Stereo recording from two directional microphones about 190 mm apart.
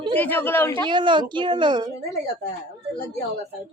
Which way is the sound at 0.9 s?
25° right (ahead or behind).